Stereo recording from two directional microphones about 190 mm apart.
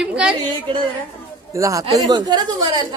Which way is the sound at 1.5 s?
15° right (ahead or behind).